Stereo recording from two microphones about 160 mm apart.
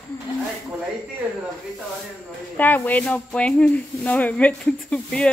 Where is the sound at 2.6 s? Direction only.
10° left (ahead or behind).